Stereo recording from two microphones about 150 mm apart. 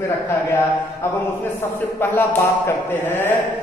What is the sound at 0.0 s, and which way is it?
A man's voice, 15° left (ahead or behind).